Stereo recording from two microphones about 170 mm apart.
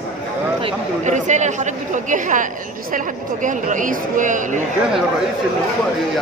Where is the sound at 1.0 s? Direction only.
45° right (ahead or behind).